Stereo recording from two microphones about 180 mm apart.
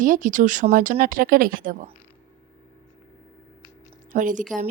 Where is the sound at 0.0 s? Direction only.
45° right (ahead or behind).